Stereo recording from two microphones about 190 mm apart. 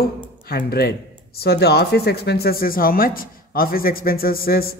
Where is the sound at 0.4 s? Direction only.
50° left (ahead or behind).